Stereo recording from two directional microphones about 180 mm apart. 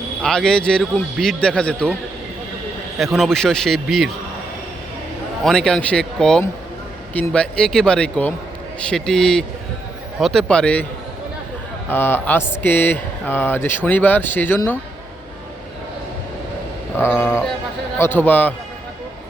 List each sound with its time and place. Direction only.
0.2 s a man's voice: 5° left (ahead or behind)
3.0 s a man's voice: centre (ahead or behind)
5.4 s a man's voice: centre (ahead or behind)
11.9 s speech: 10° left (ahead or behind)
17.2 s speech: 15° left (ahead or behind)